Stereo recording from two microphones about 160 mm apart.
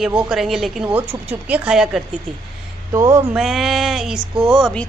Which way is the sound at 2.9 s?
15° right (ahead or behind).